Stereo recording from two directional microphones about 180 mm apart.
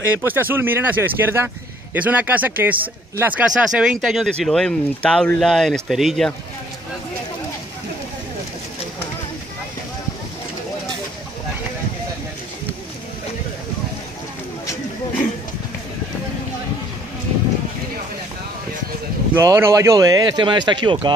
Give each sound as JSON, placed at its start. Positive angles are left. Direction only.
{"t": 0.2, "sound": "speech", "side_deg": -10}
{"t": 19.3, "sound": "speech", "side_deg": -15}